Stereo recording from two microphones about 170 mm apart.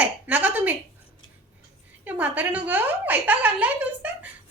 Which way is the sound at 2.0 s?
10° right (ahead or behind).